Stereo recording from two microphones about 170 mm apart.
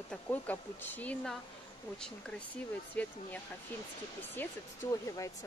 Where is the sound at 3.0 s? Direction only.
10° left (ahead or behind).